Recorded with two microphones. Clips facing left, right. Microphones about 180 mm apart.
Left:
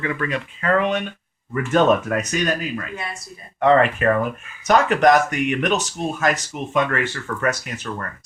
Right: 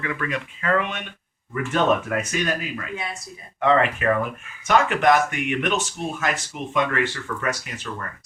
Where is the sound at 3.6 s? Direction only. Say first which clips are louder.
Left 4 dB; 40° left (ahead or behind).